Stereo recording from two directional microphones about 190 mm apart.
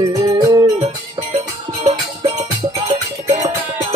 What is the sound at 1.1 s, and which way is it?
Music, 30° right (ahead or behind).